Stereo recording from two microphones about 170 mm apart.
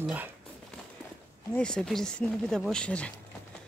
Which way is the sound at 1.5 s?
5° left (ahead or behind).